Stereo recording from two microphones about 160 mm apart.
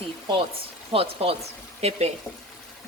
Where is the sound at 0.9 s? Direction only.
35° right (ahead or behind).